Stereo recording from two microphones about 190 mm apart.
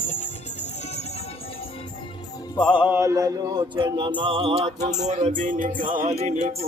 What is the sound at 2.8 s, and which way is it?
Music, 10° right (ahead or behind).